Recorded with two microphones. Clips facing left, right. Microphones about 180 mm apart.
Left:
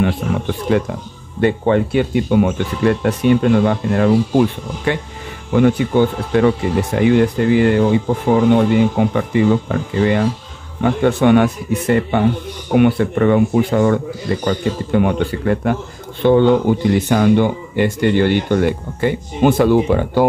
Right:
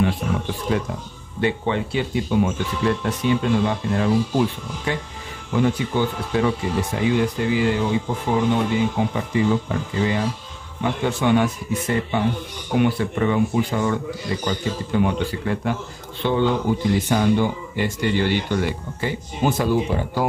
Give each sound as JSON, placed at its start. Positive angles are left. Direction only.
{"t": 0.7, "sound": "speech", "side_deg": 65}
{"t": 1.4, "sound": "speech", "side_deg": 55}
{"t": 17.1, "sound": "speech", "side_deg": 65}